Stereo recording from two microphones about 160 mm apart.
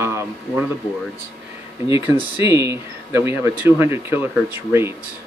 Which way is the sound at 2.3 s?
20° right (ahead or behind).